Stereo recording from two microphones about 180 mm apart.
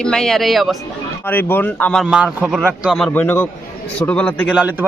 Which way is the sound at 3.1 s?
10° left (ahead or behind).